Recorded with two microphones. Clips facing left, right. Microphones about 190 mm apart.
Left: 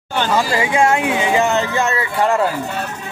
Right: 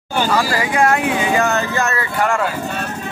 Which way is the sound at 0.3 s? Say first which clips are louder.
Left 3 dB; 20° left (ahead or behind).